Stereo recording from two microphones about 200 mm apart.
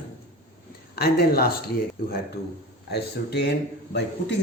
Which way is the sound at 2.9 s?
55° left (ahead or behind).